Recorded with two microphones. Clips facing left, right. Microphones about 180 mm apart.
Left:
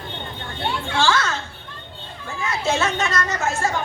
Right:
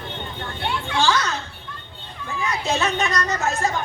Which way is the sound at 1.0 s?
15° right (ahead or behind).